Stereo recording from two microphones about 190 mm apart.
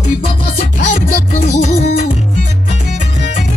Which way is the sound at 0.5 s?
40° left (ahead or behind).